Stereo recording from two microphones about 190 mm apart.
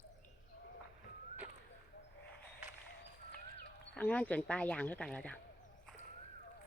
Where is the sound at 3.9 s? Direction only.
10° left (ahead or behind).